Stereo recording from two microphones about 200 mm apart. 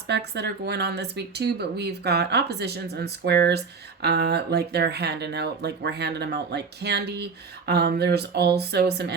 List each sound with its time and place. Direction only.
0.1 s speech: 55° right (ahead or behind)